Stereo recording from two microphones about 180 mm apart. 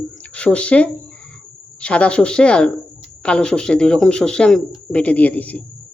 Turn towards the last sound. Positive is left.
turn(degrees=10)  # may be behind; listen again after turning